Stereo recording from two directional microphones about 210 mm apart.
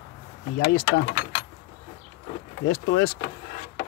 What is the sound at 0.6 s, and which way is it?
Speech, 65° left (ahead or behind).